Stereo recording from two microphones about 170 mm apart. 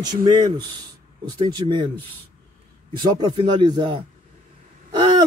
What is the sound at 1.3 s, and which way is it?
Speech, 30° right (ahead or behind).